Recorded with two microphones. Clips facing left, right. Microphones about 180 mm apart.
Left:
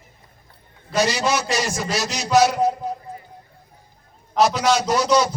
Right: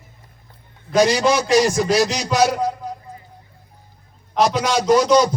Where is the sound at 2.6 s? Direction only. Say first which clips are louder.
Left 3 dB; 25° left (ahead or behind).